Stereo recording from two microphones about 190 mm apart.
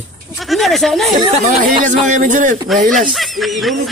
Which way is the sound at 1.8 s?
45° right (ahead or behind).